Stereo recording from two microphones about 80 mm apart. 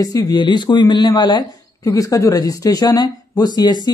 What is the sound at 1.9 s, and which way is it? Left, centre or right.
Speech, left.